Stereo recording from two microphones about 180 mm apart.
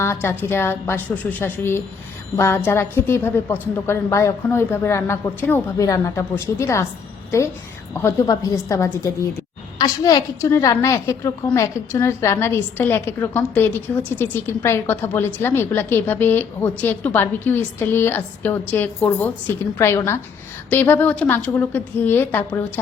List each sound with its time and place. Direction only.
0.0 s a woman's voice: 10° left (ahead or behind)
8.0 s a woman's voice: 20° left (ahead or behind)